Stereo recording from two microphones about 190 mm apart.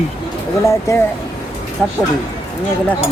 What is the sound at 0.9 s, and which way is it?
Speech, 15° left (ahead or behind).